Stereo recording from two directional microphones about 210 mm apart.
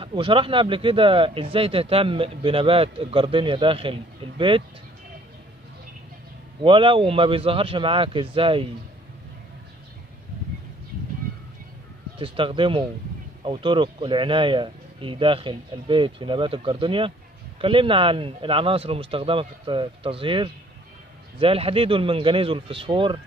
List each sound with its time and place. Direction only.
0.0 s speech: 25° right (ahead or behind)
6.6 s speech: 25° right (ahead or behind)
12.2 s speech: 25° right (ahead or behind)